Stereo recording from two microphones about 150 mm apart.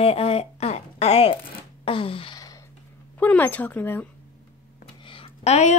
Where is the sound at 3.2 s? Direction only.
10° left (ahead or behind).